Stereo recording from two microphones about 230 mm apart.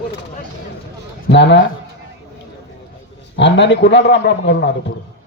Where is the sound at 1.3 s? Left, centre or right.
Left.